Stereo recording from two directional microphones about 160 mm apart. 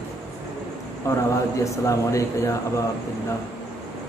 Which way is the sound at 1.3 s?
20° left (ahead or behind).